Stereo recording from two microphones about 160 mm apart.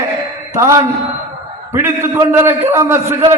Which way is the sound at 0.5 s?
20° right (ahead or behind).